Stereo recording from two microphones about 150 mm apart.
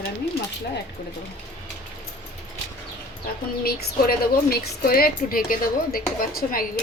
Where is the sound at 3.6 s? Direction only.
90° left.